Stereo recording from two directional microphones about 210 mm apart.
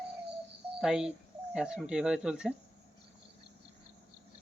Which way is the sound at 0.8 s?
5° right (ahead or behind).